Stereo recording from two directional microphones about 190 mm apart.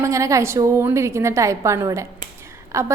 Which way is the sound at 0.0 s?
15° right (ahead or behind).